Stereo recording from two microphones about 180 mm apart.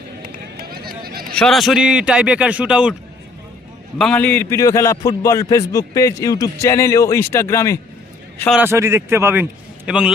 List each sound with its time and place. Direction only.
0.2 s run: 55° right (ahead or behind)
1.4 s a man's voice: centre (ahead or behind)
3.9 s a man's voice: 5° left (ahead or behind)
8.6 s a man's voice: 15° right (ahead or behind)